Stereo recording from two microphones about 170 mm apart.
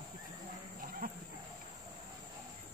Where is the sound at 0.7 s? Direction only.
55° right (ahead or behind).